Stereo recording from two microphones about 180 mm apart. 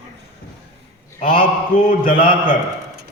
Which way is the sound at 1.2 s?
50° left (ahead or behind).